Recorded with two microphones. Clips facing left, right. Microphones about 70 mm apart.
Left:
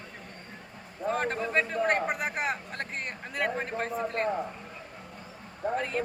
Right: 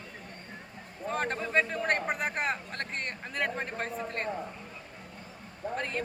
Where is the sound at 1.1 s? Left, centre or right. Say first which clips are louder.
Left 2 dB; centre.